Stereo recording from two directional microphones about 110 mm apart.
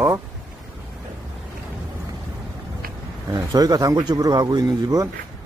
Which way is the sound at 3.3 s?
35° right (ahead or behind).